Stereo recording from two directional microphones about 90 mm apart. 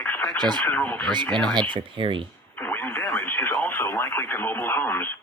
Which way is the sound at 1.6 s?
65° right (ahead or behind).